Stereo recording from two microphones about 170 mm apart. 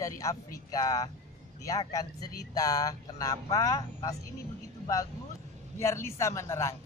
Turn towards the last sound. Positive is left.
turn(degrees=15)  # may be behind; listen again after turning